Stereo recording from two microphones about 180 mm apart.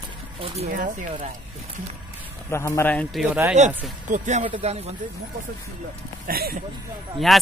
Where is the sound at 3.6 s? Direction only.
40° right (ahead or behind).